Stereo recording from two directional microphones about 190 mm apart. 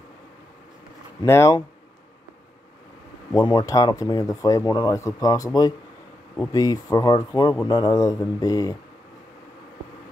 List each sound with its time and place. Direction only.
1.2 s speech: 15° left (ahead or behind)
3.3 s speech: 20° left (ahead or behind)